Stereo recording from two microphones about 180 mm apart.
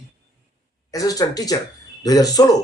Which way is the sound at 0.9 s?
20° left (ahead or behind).